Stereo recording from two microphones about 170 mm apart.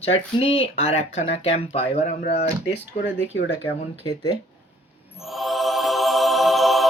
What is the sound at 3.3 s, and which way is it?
Speech, 90° left.